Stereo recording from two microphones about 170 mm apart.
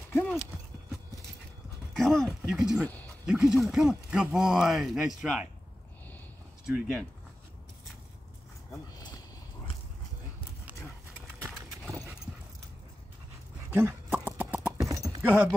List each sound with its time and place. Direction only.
2.0 s a sound: centre (ahead or behind)
2.8 s speech: 10° left (ahead or behind)
3.3 s speech: 5° right (ahead or behind)
6.6 s speech: centre (ahead or behind)
8.9 s a sound: 20° left (ahead or behind)
13.7 s horse: 10° right (ahead or behind)
14.8 s clip-clop: 20° right (ahead or behind)